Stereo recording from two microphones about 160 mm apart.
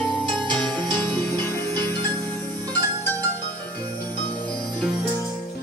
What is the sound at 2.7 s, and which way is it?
Zither, 10° left (ahead or behind).